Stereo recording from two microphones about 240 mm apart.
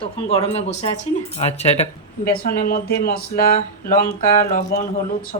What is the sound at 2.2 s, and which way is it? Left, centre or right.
Speech, left.